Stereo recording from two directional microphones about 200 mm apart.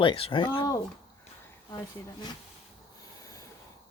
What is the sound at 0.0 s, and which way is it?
Speech, 25° left (ahead or behind).